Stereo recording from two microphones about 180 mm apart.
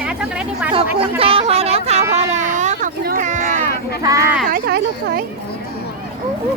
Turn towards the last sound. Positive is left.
turn(degrees=-60)  # may be behind; listen again after turning